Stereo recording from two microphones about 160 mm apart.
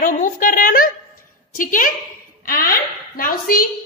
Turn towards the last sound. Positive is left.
turn(degrees=60)  # may be behind; listen again after turning